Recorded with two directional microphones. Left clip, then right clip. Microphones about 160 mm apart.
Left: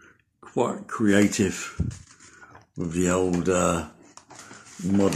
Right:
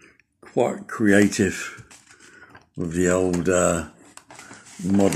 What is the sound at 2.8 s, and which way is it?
Speech, 15° right (ahead or behind).